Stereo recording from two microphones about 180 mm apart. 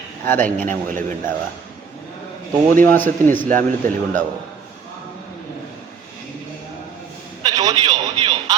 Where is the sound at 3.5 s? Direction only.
45° right (ahead or behind).